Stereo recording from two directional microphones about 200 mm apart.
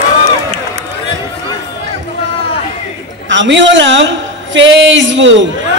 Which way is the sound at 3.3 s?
65° right (ahead or behind).